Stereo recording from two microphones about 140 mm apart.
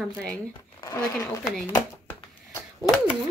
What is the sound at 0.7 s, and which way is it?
Speech, 25° left (ahead or behind).